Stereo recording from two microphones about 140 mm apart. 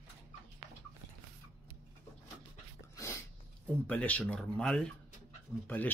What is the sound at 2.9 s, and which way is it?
Dog, 20° left (ahead or behind).